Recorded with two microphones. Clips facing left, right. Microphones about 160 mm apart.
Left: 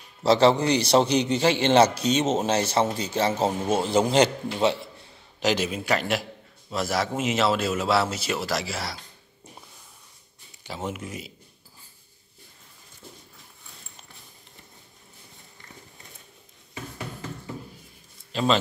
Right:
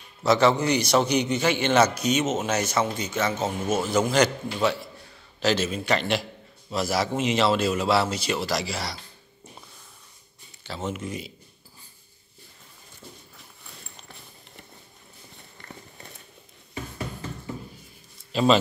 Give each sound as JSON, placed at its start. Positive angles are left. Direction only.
{"t": 0.2, "sound": "a man's voice", "side_deg": 30}
{"t": 5.4, "sound": "a man's voice", "side_deg": 15}
{"t": 10.6, "sound": "a man's voice", "side_deg": 15}
{"t": 18.3, "sound": "a man's voice", "side_deg": -10}